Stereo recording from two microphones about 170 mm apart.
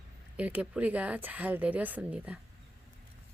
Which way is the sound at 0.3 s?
10° right (ahead or behind).